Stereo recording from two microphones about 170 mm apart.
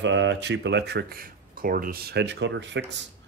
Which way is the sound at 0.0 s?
90° right.